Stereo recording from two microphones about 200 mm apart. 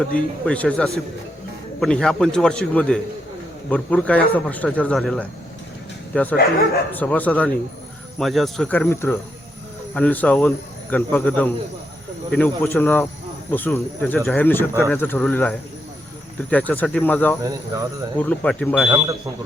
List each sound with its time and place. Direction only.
0.0 s a man's voice: 5° left (ahead or behind)
17.4 s speech: 15° right (ahead or behind)
18.2 s speech: 5° left (ahead or behind)
18.9 s a man's voice: 20° right (ahead or behind)